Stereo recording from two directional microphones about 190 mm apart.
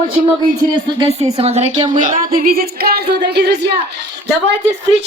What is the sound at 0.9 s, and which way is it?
A woman's voice, 30° right (ahead or behind).